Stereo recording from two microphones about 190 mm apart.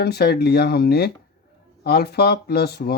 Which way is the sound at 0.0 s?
55° left (ahead or behind).